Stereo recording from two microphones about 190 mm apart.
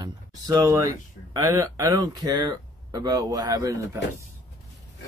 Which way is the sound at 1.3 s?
15° right (ahead or behind).